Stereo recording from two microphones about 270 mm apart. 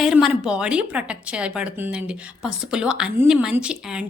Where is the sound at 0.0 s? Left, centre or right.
Centre.